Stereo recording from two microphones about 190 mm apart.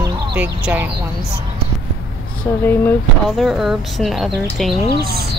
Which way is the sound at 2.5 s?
10° left (ahead or behind).